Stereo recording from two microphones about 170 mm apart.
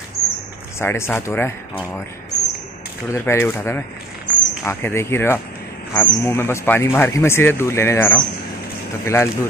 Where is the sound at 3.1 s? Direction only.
15° left (ahead or behind).